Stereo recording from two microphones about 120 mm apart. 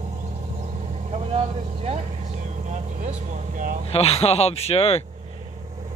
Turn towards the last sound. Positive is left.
turn(degrees=60)  # may be behind; listen again after turning